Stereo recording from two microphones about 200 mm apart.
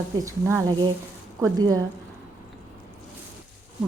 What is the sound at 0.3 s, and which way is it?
Speech, 15° right (ahead or behind).